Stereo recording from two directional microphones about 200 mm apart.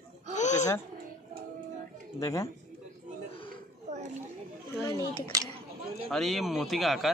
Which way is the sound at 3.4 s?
35° right (ahead or behind).